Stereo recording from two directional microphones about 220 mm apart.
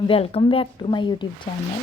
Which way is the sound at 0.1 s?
25° left (ahead or behind).